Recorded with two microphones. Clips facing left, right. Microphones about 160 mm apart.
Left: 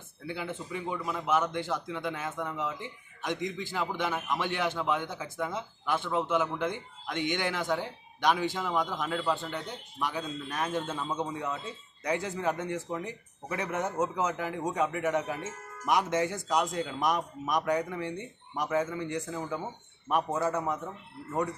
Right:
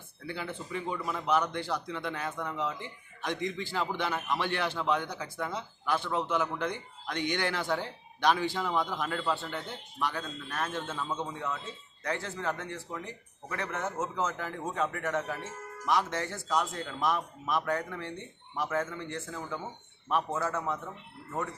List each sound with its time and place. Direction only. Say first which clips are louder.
0.3 s speech: left 1 dB; 15° left (ahead or behind)
3.2 s a man's voice: even; 20° left (ahead or behind)
9.0 s a man's voice: left 1 dB; centre (ahead or behind); by 20.7 s 15° left (ahead or behind)